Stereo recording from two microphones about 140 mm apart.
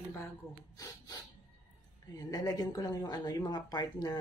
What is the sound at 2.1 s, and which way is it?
A woman's voice, 25° left (ahead or behind).